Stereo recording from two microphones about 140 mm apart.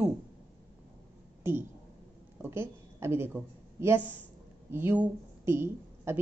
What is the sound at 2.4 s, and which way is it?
A woman's voice, 15° right (ahead or behind).